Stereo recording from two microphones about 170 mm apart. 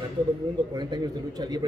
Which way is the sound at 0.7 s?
25° right (ahead or behind).